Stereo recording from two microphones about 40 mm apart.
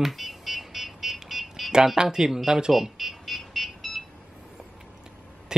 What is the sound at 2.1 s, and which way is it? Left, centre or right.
Speech, centre.